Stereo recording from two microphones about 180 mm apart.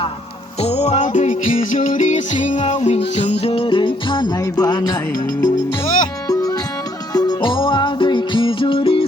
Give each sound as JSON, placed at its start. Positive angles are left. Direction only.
{"t": 0.6, "sound": "music", "side_deg": 35}
{"t": 5.8, "sound": "music", "side_deg": 45}
{"t": 7.1, "sound": "music", "side_deg": 20}